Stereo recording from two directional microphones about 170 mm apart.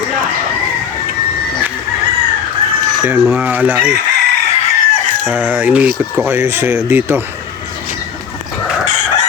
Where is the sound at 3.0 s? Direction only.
10° right (ahead or behind).